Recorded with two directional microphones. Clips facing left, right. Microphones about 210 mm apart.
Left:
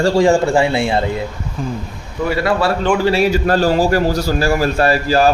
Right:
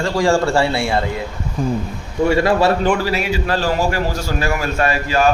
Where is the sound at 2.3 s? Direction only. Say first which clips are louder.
Right 1 dB; 25° right (ahead or behind).